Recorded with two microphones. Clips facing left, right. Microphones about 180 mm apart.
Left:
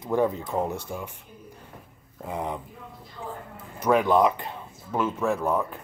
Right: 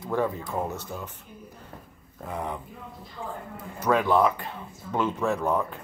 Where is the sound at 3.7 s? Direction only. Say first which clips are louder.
Left 2 dB; 15° left (ahead or behind).